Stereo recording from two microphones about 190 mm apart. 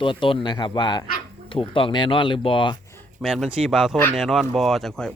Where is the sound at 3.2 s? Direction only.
Centre (ahead or behind).